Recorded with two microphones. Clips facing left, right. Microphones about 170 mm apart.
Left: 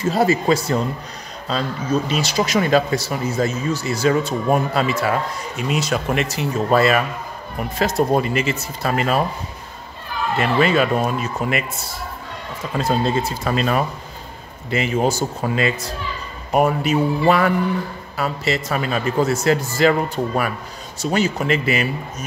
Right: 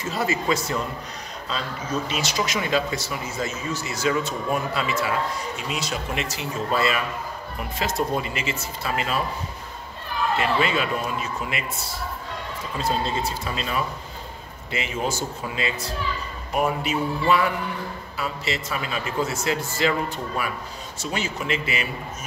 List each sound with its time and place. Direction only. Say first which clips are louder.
0.0 s a man's voice: left 8 dB; 35° left (ahead or behind); by 7.1 s 55° left (ahead or behind)
7.8 s a man's voice: left 7 dB; 45° left (ahead or behind)
10.4 s a man's voice: left 9 dB; 50° left (ahead or behind)
12.7 s a man's voice: left 6 dB; 45° left (ahead or behind)
14.7 s a man's voice: left 8 dB; 40° left (ahead or behind)
21.0 s a man's voice: left 9 dB; 40° left (ahead or behind)